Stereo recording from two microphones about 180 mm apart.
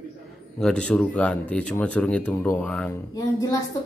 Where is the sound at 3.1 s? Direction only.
20° left (ahead or behind).